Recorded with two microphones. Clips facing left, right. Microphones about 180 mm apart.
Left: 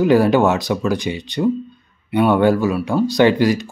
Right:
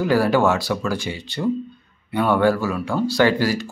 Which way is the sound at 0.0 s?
20° left (ahead or behind).